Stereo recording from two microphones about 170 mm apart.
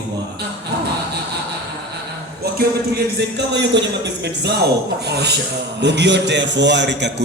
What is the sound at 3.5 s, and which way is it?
A man's voice, 90° right.